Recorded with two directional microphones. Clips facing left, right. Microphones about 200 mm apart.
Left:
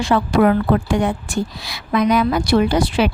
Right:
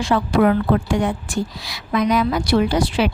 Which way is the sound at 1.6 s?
60° left (ahead or behind).